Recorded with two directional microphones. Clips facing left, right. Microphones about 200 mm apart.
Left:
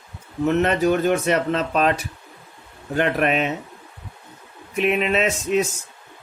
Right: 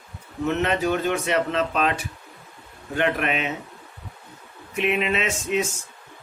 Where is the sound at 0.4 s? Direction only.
45° left (ahead or behind).